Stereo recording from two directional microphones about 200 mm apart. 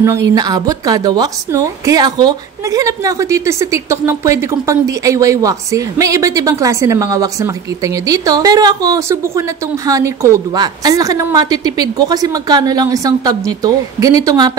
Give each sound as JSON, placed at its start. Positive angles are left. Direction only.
{"t": 0.3, "sound": "a woman's voice", "side_deg": -20}